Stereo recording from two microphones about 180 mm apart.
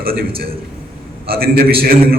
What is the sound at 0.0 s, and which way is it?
A man's voice, 55° right (ahead or behind).